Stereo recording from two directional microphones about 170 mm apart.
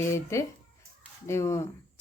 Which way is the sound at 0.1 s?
15° left (ahead or behind).